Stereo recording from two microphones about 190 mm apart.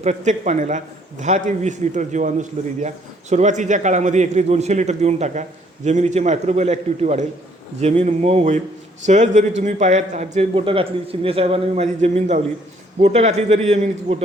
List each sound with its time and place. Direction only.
0.0 s a man's voice: 35° right (ahead or behind)